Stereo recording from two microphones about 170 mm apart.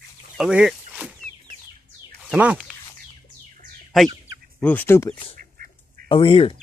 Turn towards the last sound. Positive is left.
turn(degrees=30)  # may be behind; listen again after turning